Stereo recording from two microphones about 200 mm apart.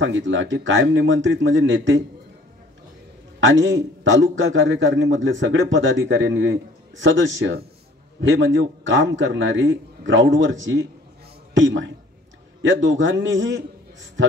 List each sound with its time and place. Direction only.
0.0 s a man's voice: 70° right (ahead or behind)
3.4 s a man's voice: 70° right (ahead or behind)